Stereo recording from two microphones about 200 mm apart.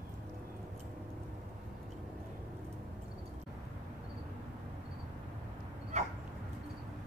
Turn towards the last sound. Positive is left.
turn(degrees=-35)  # may be behind; listen again after turning